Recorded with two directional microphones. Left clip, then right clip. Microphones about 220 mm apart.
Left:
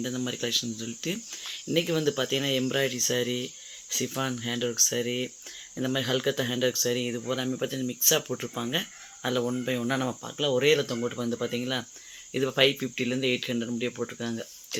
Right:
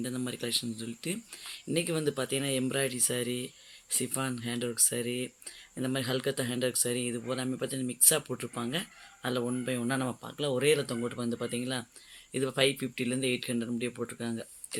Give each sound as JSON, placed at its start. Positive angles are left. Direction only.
{"t": 0.0, "sound": "speech", "side_deg": 5}